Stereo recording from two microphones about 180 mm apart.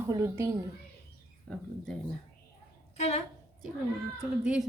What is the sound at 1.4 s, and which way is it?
Speech, 5° left (ahead or behind).